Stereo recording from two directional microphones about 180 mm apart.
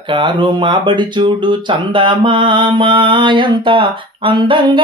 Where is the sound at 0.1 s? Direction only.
25° right (ahead or behind).